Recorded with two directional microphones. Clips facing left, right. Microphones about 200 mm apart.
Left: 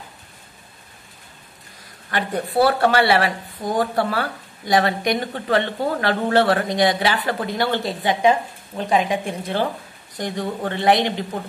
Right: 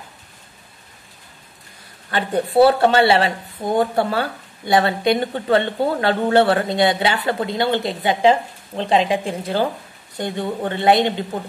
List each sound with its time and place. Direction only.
2.0 s speech: 25° right (ahead or behind)